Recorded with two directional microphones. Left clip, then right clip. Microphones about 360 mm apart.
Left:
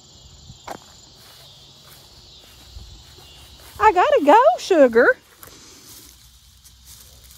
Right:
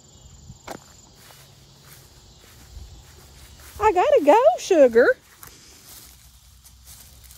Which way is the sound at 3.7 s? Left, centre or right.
Left.